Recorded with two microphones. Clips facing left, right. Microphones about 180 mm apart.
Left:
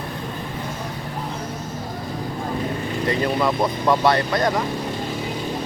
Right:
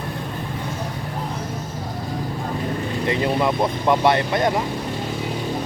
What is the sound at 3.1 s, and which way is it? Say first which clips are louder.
Speech: right 1 dB; 20° right (ahead or behind).